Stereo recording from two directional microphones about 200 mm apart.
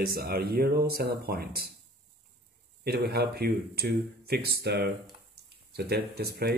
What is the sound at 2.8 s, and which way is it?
Speech, 50° right (ahead or behind).